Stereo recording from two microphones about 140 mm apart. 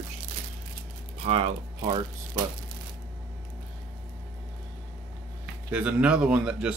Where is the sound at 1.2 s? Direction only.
45° right (ahead or behind).